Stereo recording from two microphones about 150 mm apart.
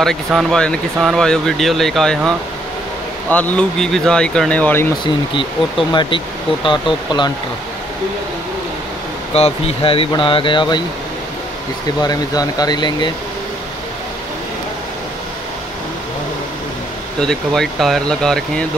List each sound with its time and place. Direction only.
0.0 s speech: centre (ahead or behind)
5.0 s speech: 35° left (ahead or behind)
9.3 s speech: 40° left (ahead or behind)
12.0 s speech: 25° left (ahead or behind)
17.2 s speech: 5° left (ahead or behind)